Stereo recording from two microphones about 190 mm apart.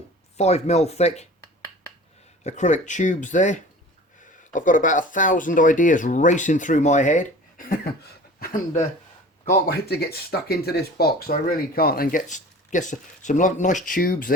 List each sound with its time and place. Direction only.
0.3 s speech: 35° left (ahead or behind)
2.4 s speech: 35° left (ahead or behind)
9.5 s speech: 55° left (ahead or behind)